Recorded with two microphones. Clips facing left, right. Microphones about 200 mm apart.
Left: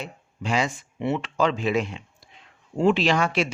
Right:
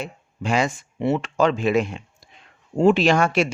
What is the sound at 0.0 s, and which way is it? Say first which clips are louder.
Speech: right 4 dB; 50° right (ahead or behind).